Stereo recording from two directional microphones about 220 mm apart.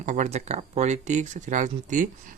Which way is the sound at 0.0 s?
35° right (ahead or behind).